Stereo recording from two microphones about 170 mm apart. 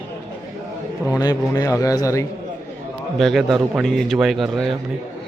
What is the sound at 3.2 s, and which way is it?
Speech, centre (ahead or behind).